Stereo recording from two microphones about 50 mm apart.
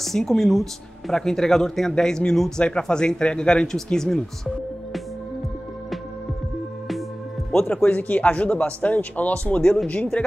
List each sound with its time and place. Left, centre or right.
0.0 s speech: centre
7.6 s speech: left